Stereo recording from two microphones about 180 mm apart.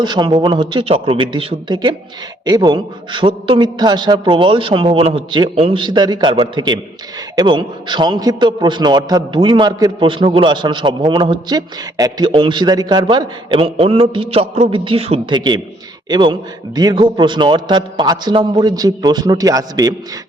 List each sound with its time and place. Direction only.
0.0 s a man's voice: 25° right (ahead or behind)